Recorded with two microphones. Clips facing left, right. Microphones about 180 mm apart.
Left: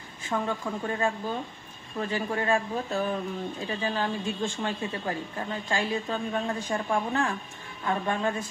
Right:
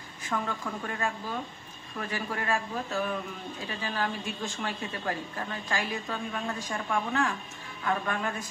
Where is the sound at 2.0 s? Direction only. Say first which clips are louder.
Left 5 dB; 25° left (ahead or behind).